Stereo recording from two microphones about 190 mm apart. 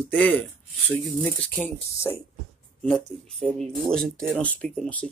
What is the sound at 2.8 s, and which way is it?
Speech, centre (ahead or behind).